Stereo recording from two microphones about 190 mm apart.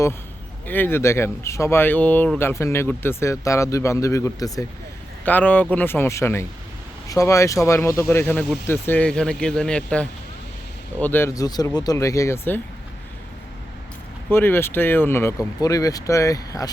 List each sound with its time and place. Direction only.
0.7 s speech: 10° left (ahead or behind)
14.3 s speech: 10° left (ahead or behind)